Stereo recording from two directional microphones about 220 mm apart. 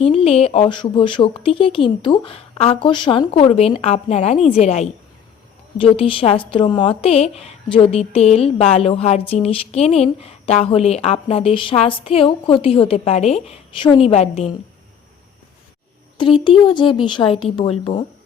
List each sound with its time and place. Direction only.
0.0 s a woman's voice: 25° left (ahead or behind)
16.1 s a woman's voice: 20° left (ahead or behind)